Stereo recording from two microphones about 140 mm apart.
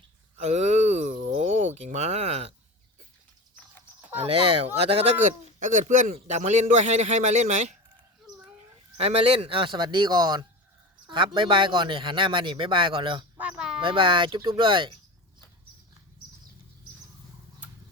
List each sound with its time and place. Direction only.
0.3 s a sound: 55° right (ahead or behind)
4.3 s speech: 45° right (ahead or behind)
5.5 s a man's voice: 60° right (ahead or behind)
6.1 s a man's voice: 55° right (ahead or behind)
9.0 s speech: 45° right (ahead or behind)
13.4 s a sound: 5° right (ahead or behind)
13.8 s speech: 35° right (ahead or behind)